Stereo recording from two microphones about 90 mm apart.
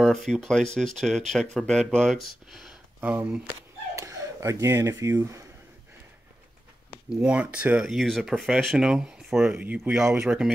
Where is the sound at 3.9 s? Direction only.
35° right (ahead or behind).